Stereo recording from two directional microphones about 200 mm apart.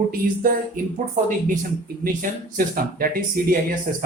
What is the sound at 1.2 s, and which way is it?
Speech, 40° right (ahead or behind).